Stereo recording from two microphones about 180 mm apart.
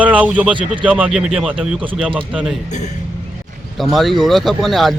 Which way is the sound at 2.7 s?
40° left (ahead or behind).